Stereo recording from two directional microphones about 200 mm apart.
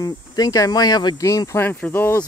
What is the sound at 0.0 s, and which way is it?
Speech, 20° left (ahead or behind).